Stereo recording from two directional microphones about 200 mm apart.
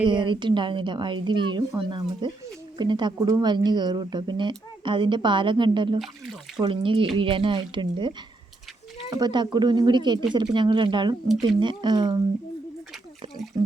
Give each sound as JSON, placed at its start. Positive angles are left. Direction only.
{"t": 0.0, "sound": "speech", "side_deg": -25}